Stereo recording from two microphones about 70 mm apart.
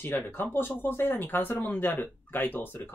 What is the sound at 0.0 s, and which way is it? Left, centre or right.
Speech, left.